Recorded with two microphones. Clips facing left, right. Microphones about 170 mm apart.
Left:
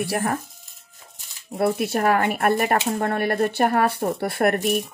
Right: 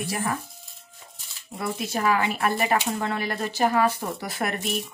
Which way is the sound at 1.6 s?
60° left (ahead or behind).